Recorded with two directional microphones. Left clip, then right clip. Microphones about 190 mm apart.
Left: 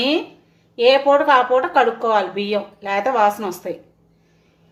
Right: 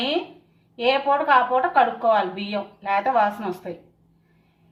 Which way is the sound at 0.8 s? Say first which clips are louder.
Left 7 dB; 50° left (ahead or behind).